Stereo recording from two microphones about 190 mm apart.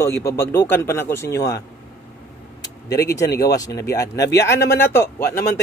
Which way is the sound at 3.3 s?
60° left (ahead or behind).